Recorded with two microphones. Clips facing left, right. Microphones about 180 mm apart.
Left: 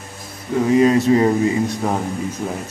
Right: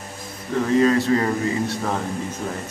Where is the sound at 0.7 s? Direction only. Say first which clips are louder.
Left 4 dB; 15° left (ahead or behind).